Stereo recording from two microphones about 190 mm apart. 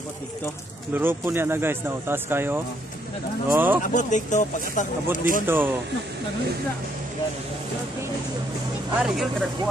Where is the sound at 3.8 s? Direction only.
40° left (ahead or behind).